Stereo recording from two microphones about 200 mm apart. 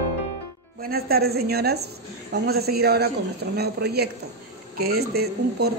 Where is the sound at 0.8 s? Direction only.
50° right (ahead or behind).